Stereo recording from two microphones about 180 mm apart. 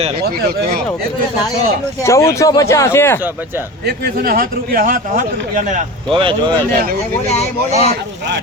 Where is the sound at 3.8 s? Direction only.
60° right (ahead or behind).